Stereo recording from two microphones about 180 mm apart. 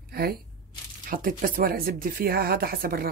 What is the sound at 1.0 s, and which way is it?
Speech, 50° right (ahead or behind).